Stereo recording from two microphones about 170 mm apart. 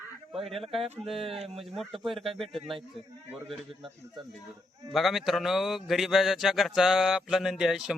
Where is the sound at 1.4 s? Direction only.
35° right (ahead or behind).